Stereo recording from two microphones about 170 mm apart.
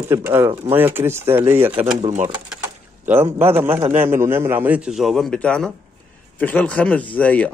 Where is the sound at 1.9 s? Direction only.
45° right (ahead or behind).